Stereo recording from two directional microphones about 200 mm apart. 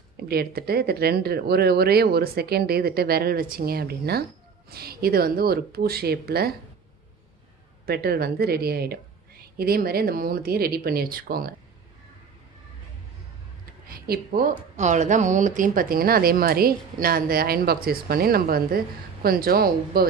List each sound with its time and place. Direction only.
0.2 s speech: 50° right (ahead or behind)
7.8 s speech: 50° right (ahead or behind)
13.8 s speech: 50° right (ahead or behind)